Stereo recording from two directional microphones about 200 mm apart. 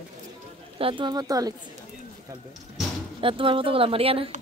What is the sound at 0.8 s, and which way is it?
Speech, 25° right (ahead or behind).